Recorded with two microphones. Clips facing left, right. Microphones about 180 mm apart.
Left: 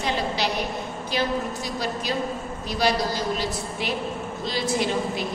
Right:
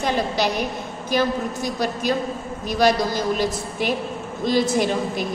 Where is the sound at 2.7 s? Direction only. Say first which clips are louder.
Right 5 dB; 50° right (ahead or behind).